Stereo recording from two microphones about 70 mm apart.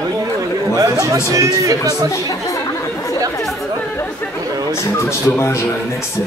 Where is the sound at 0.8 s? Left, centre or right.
Right.